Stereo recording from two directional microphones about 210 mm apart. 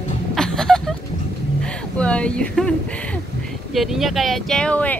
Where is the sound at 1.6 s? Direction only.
5° left (ahead or behind).